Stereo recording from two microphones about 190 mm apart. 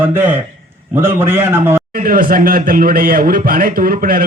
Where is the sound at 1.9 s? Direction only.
50° right (ahead or behind).